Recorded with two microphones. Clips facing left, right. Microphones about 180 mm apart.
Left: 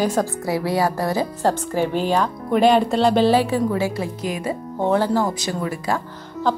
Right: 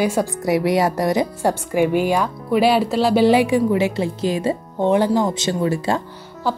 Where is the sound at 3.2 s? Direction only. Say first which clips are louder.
Right 3 dB; 15° right (ahead or behind).